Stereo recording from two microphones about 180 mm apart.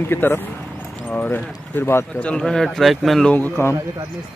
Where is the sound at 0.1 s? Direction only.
10° left (ahead or behind).